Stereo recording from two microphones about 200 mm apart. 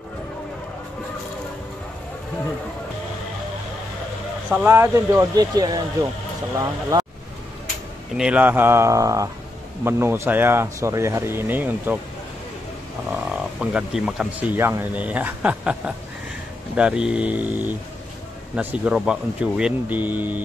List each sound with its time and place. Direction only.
4.5 s speech: 15° right (ahead or behind)
8.2 s speech: 5° right (ahead or behind)
13.1 s speech: 5° right (ahead or behind)